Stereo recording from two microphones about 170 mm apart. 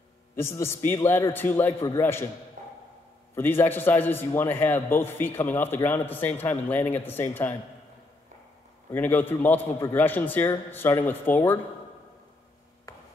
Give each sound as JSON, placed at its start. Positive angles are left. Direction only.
{"t": 0.4, "sound": "a man's voice", "side_deg": 15}
{"t": 2.6, "sound": "wood block", "side_deg": -45}
{"t": 3.3, "sound": "a man's voice", "side_deg": 10}
{"t": 8.9, "sound": "a man's voice", "side_deg": 10}